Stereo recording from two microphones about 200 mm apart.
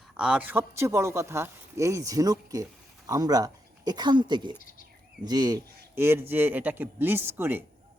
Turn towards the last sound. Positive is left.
turn(degrees=-10)  # may be behind; listen again after turning